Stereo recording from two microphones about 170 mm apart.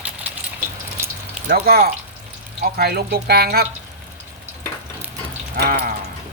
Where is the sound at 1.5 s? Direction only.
65° right (ahead or behind).